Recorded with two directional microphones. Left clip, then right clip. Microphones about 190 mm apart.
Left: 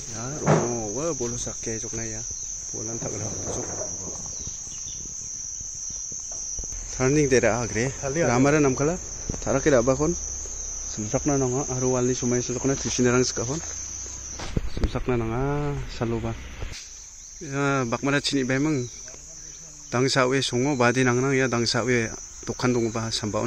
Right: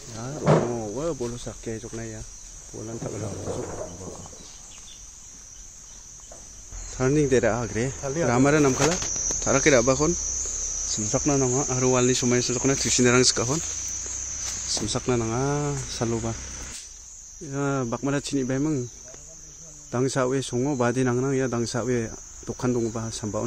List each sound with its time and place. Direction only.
0.7 s cricket: 5° left (ahead or behind)
3.4 s cricket: 50° right (ahead or behind)
7.0 s speech: 5° left (ahead or behind)
8.0 s speech: 45° left (ahead or behind)
8.3 s speech: centre (ahead or behind)
14.9 s speech: 10° right (ahead or behind)
17.5 s speech: centre (ahead or behind)
19.9 s speech: 5° left (ahead or behind)